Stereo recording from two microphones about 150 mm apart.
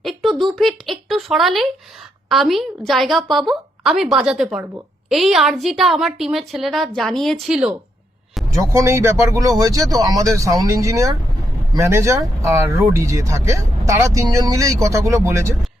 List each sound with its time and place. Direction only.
0.0 s a sound: centre (ahead or behind)
2.3 s a woman's voice: centre (ahead or behind)
8.5 s speech: 20° right (ahead or behind)